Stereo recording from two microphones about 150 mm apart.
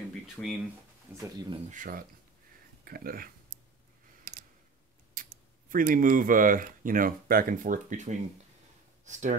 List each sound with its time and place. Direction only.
0.4 s speech: 10° left (ahead or behind)
1.1 s speech: 15° right (ahead or behind)
1.7 s speech: 65° right (ahead or behind)
2.8 s speech: 80° right
5.1 s speech: 65° right (ahead or behind)